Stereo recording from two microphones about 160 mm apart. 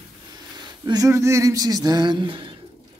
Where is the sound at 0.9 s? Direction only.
20° right (ahead or behind).